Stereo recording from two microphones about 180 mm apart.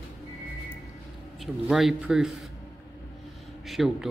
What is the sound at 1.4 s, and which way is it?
Speech, centre (ahead or behind).